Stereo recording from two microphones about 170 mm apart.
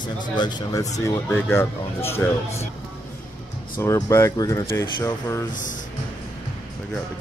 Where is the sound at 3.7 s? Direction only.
20° left (ahead or behind).